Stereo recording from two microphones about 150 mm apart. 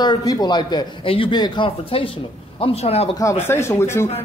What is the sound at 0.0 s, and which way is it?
A man's voice, 25° left (ahead or behind).